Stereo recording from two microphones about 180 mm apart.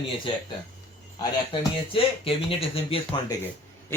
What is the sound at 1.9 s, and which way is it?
Speech, 30° left (ahead or behind).